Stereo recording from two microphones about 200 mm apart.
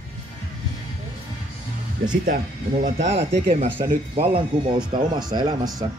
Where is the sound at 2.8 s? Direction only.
35° right (ahead or behind).